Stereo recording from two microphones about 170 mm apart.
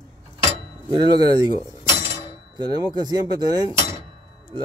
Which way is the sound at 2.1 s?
25° right (ahead or behind).